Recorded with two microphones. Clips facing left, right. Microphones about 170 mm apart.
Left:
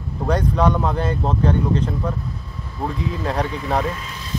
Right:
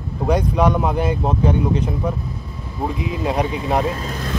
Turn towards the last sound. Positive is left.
turn(degrees=-50)  # may be behind; listen again after turning